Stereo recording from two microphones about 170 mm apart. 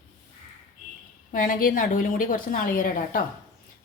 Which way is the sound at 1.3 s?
55° left (ahead or behind).